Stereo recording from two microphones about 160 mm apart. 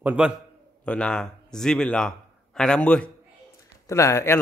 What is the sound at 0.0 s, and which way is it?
Speech, 10° right (ahead or behind).